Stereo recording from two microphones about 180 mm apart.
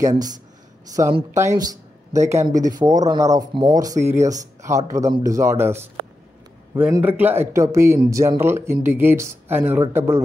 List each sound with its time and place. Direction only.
0.0 s speech: 20° right (ahead or behind)
6.9 s speech: 10° right (ahead or behind)